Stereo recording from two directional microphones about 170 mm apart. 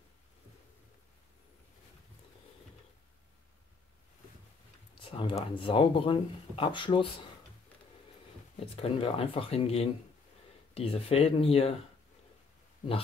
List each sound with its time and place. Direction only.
4.9 s a sound: 30° left (ahead or behind)
5.6 s speech: 30° left (ahead or behind)
8.5 s speech: 35° left (ahead or behind)
12.8 s speech: 50° left (ahead or behind)